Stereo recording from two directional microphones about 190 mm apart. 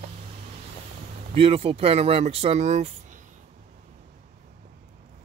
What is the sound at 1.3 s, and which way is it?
Speech, 30° right (ahead or behind).